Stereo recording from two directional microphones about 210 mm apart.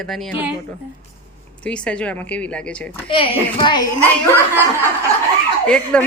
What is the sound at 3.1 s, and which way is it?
Speech, 25° left (ahead or behind).